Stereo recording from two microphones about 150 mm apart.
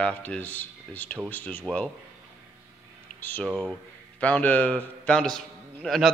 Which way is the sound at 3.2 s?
10° left (ahead or behind).